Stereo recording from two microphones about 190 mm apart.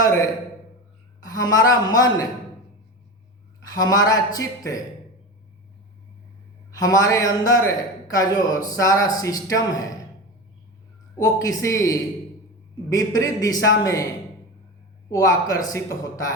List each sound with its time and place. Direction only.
1.2 s speech: 20° left (ahead or behind)
3.7 s speech: 20° left (ahead or behind)
6.7 s speech: 20° left (ahead or behind)
11.2 s a man's voice: 20° left (ahead or behind)
15.1 s a man's voice: 20° left (ahead or behind)